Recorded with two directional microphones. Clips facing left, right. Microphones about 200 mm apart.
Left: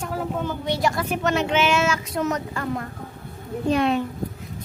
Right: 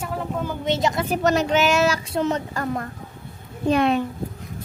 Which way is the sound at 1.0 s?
40° right (ahead or behind).